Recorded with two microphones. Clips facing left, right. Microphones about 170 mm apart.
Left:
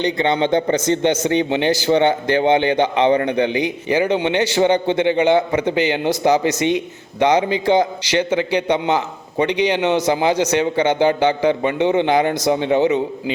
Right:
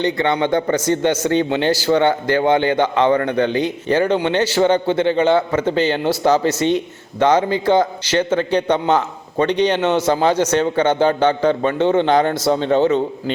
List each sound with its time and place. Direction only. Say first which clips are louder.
0.0 s a man's voice: even; 20° left (ahead or behind)